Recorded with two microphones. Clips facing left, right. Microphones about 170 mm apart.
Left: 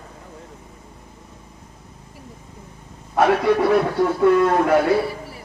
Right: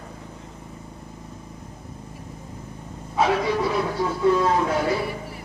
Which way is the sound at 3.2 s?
60° left (ahead or behind).